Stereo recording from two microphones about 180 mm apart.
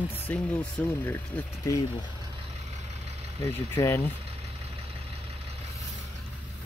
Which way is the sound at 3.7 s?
15° left (ahead or behind).